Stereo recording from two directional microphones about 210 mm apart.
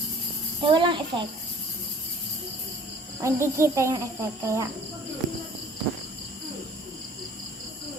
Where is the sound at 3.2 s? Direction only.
15° right (ahead or behind).